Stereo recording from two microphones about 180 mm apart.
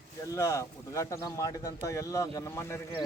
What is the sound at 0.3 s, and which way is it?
Speech, 15° left (ahead or behind).